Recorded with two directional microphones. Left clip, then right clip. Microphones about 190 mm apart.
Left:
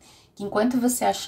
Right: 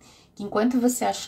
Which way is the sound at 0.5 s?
5° right (ahead or behind).